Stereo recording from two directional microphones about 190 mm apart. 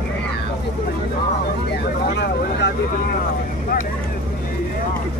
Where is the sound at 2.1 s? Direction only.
65° left (ahead or behind).